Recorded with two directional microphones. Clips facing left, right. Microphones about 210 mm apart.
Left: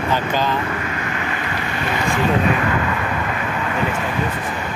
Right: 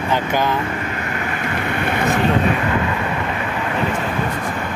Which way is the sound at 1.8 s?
55° right (ahead or behind).